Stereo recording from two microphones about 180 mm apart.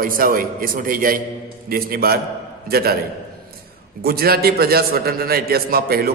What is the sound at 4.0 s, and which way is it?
A man's voice, 60° right (ahead or behind).